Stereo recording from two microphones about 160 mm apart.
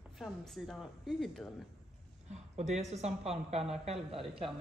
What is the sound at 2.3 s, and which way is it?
A woman's voice, 45° right (ahead or behind).